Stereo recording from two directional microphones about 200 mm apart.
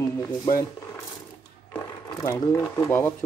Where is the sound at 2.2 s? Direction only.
15° left (ahead or behind).